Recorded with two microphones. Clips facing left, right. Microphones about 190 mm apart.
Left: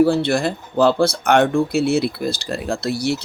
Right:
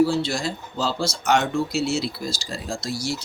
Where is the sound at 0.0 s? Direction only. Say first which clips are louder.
Left 5 dB; 60° left (ahead or behind).